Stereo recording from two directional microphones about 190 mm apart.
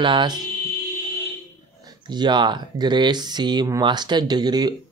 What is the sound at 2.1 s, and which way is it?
Speech, 25° right (ahead or behind).